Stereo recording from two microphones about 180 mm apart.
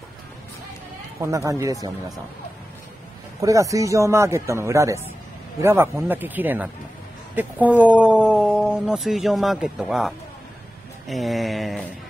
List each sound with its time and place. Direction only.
1.2 s speech: 15° right (ahead or behind)
3.3 s speech: 20° right (ahead or behind); by 11.8 s centre (ahead or behind)